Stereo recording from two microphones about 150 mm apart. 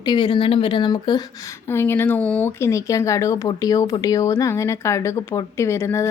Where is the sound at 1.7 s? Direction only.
15° left (ahead or behind).